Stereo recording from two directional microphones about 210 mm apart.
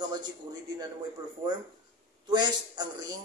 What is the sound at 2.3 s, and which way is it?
Speech, 20° right (ahead or behind).